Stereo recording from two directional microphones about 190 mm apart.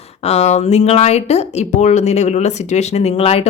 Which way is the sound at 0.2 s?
35° left (ahead or behind).